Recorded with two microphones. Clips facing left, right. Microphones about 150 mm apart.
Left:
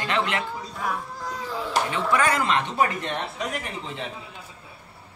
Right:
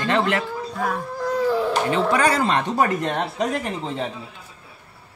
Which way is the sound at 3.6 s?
40° right (ahead or behind).